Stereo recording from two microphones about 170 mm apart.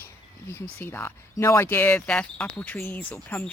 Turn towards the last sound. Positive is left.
turn(degrees=10)  # may be behind; listen again after turning